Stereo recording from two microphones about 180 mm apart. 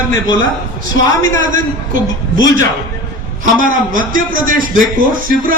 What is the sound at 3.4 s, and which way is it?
Speech, 50° right (ahead or behind).